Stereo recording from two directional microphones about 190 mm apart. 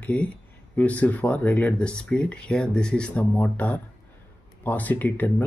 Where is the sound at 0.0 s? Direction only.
5° left (ahead or behind).